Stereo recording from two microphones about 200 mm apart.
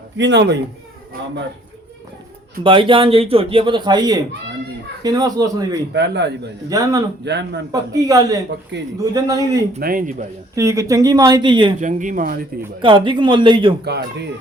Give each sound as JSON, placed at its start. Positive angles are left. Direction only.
{"t": 0.2, "sound": "speech", "side_deg": -60}
{"t": 2.6, "sound": "speech", "side_deg": -25}
{"t": 5.9, "sound": "speech", "side_deg": -60}
{"t": 6.7, "sound": "speech", "side_deg": -20}
{"t": 7.3, "sound": "speech", "side_deg": -60}
{"t": 7.7, "sound": "a man's voice", "side_deg": -20}
{"t": 8.7, "sound": "speech", "side_deg": -60}
{"t": 9.1, "sound": "a man's voice", "side_deg": -20}
{"t": 9.8, "sound": "a man's voice", "side_deg": -45}
{"t": 10.5, "sound": "speech", "side_deg": -15}
{"t": 11.8, "sound": "speech", "side_deg": -40}
{"t": 12.8, "sound": "speech", "side_deg": -25}